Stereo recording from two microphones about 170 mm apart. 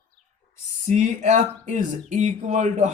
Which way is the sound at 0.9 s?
45° right (ahead or behind).